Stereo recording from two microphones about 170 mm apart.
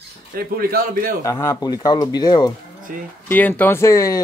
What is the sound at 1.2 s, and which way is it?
Speech, 20° left (ahead or behind).